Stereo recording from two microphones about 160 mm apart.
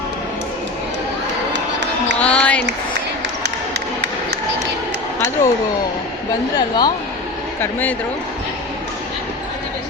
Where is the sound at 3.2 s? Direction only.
90° right.